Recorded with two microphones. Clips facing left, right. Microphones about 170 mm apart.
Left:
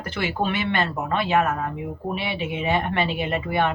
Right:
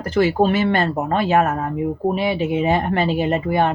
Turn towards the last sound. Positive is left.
turn(degrees=-40)  # may be behind; listen again after turning